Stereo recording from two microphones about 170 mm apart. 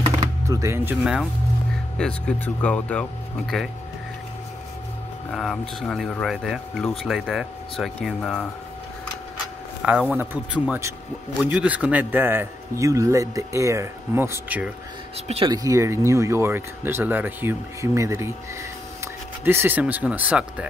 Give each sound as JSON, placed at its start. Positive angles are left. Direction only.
{"t": 0.2, "sound": "music", "side_deg": -20}
{"t": 2.0, "sound": "speech", "side_deg": 5}
{"t": 5.3, "sound": "speech", "side_deg": 5}
{"t": 9.8, "sound": "speech", "side_deg": -5}
{"t": 15.2, "sound": "speech", "side_deg": -35}
{"t": 15.5, "sound": "speech", "side_deg": -20}
{"t": 19.4, "sound": "speech", "side_deg": -15}